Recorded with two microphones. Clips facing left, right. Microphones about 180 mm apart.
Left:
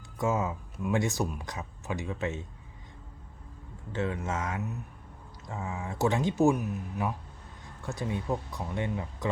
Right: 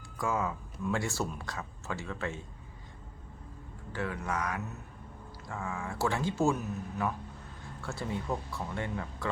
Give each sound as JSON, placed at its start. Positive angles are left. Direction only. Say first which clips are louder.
{"t": 0.2, "sound": "speech", "louder": "left 3 dB", "side_deg": 20}
{"t": 3.9, "sound": "speech", "louder": "left 3 dB", "side_deg": 25}